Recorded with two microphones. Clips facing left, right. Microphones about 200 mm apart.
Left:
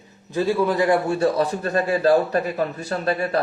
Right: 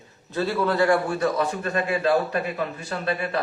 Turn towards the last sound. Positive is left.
turn(degrees=40)  # may be behind; listen again after turning